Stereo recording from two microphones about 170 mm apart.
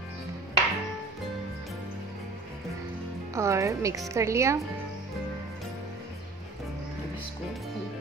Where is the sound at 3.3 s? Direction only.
15° right (ahead or behind).